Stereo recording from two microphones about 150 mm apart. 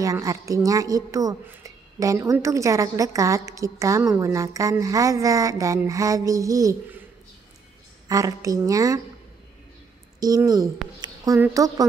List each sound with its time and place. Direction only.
0.0 s a woman's voice: 20° right (ahead or behind)
8.1 s a woman's voice: 20° right (ahead or behind)
10.2 s a woman's voice: 25° right (ahead or behind)
11.0 s a sound: 25° right (ahead or behind)
11.4 s a woman's voice: 20° right (ahead or behind)